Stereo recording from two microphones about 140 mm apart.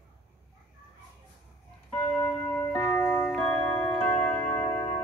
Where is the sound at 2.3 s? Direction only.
10° left (ahead or behind).